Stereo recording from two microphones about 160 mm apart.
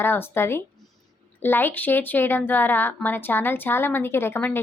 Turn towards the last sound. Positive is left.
turn(degrees=15)  # may be behind; listen again after turning